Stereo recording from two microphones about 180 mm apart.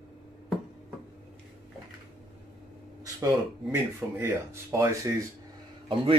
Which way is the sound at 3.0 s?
20° right (ahead or behind).